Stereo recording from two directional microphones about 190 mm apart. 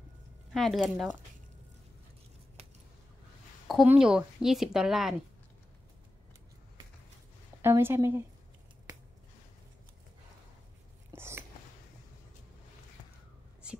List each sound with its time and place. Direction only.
0.5 s speech: centre (ahead or behind)
3.6 s speech: 5° right (ahead or behind)
7.6 s a woman's voice: 15° right (ahead or behind)
11.1 s a sound: 10° right (ahead or behind)
13.6 s whispering: 5° right (ahead or behind)